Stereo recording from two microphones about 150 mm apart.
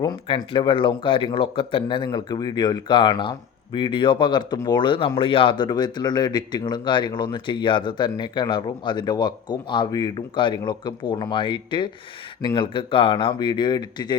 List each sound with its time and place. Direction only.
0.0 s speech: 25° left (ahead or behind)